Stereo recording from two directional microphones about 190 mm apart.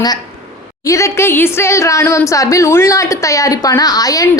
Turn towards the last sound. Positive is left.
turn(degrees=20)  # may be behind; listen again after turning